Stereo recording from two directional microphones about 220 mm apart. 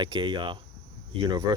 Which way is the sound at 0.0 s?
20° right (ahead or behind).